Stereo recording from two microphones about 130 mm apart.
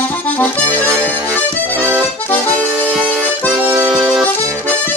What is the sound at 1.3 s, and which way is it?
Accordion, 15° right (ahead or behind).